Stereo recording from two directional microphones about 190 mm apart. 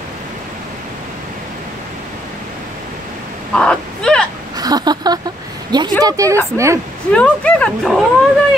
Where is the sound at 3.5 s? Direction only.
5° left (ahead or behind).